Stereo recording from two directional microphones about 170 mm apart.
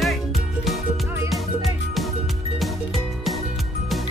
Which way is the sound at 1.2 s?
Centre (ahead or behind).